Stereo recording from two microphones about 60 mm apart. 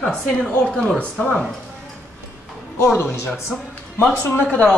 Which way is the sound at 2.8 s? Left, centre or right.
Left.